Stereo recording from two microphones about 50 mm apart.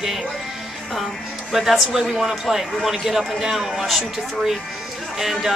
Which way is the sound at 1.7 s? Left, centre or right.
Centre.